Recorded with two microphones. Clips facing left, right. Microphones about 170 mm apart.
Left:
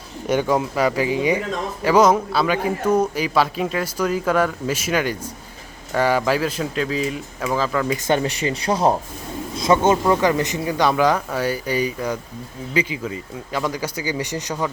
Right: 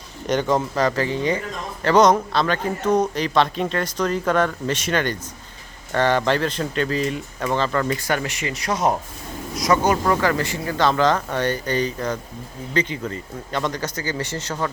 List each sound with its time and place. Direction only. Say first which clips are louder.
0.3 s speech: left 1 dB; 10° left (ahead or behind)
7.9 s speech: left 3 dB; 20° left (ahead or behind)